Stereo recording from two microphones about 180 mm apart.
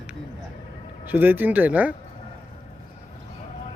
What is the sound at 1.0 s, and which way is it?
Speech, 10° right (ahead or behind).